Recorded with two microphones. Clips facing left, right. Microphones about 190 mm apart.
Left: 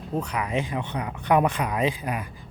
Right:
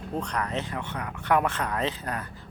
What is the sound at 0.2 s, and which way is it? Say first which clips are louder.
A man's voice: left 3 dB; 10° left (ahead or behind).